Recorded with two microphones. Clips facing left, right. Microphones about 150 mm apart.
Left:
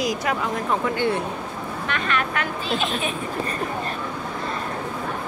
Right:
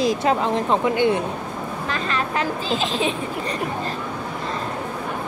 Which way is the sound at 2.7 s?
90° right.